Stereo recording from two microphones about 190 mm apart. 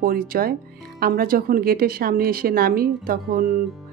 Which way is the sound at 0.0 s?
50° right (ahead or behind).